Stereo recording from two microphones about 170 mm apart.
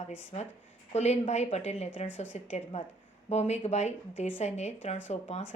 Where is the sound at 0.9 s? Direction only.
40° left (ahead or behind).